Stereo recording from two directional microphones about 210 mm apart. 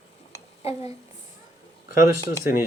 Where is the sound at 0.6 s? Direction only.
30° left (ahead or behind).